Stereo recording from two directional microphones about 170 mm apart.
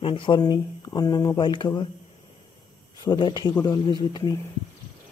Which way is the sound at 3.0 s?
25° left (ahead or behind).